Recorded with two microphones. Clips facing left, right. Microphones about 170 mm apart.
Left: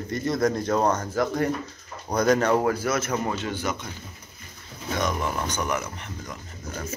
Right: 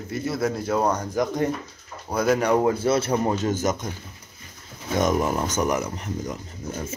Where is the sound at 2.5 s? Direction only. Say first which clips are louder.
Right 3 dB; 20° right (ahead or behind); by 3.9 s 45° right (ahead or behind).